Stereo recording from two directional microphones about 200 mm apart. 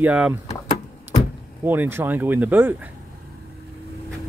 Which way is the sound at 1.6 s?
10° right (ahead or behind).